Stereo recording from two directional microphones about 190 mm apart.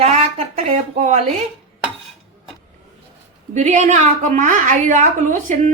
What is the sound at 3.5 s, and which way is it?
A woman's voice, 40° right (ahead or behind).